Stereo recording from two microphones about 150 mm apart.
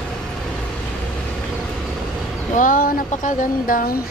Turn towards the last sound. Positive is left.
turn(degrees=90)